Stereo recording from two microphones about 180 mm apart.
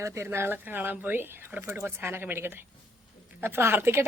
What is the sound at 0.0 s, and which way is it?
A woman's voice, 15° right (ahead or behind).